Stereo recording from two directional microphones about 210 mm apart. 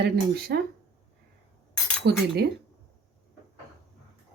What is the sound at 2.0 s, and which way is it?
Speech, 50° right (ahead or behind).